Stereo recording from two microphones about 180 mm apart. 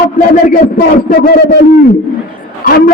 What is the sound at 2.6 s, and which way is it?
Speech, 55° left (ahead or behind).